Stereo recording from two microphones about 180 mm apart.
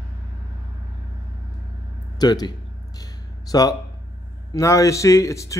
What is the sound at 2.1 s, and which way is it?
A man's voice, 20° left (ahead or behind).